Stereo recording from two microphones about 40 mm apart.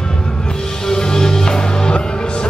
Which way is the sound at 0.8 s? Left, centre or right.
Centre.